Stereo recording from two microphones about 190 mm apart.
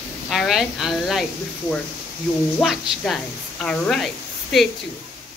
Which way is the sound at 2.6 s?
Centre (ahead or behind).